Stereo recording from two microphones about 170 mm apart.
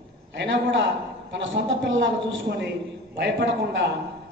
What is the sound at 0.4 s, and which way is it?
A man's voice, 90° right.